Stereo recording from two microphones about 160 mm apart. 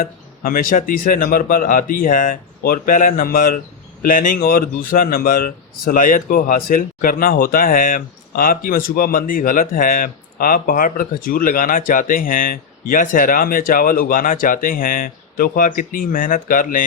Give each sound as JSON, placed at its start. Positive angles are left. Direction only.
{"t": 0.0, "sound": "speech", "side_deg": 65}